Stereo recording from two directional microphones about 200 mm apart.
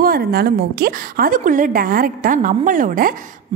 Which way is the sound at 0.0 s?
50° right (ahead or behind).